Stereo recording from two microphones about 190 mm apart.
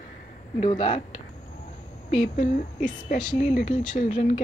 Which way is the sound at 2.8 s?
40° left (ahead or behind).